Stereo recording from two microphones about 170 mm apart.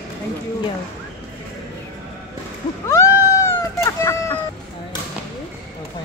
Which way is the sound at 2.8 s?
15° left (ahead or behind).